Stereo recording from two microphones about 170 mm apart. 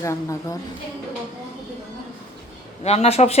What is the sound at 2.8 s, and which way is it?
Speech, 40° left (ahead or behind).